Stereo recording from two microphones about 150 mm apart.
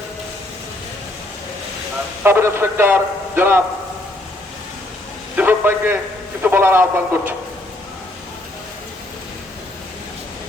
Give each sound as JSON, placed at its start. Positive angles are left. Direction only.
{"t": 2.2, "sound": "a man's voice", "side_deg": -15}
{"t": 5.4, "sound": "a sound", "side_deg": -15}
{"t": 6.4, "sound": "a man's voice", "side_deg": -15}